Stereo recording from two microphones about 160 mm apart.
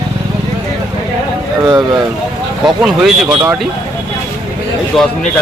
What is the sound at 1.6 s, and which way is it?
Speech, 25° right (ahead or behind).